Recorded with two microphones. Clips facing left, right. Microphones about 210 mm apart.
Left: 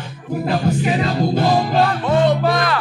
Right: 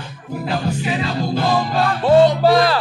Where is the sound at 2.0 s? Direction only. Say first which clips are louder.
Right 9 dB; 30° right (ahead or behind).